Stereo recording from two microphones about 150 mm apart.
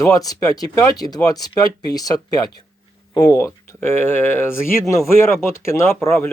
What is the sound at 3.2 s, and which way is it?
Speech, 15° left (ahead or behind).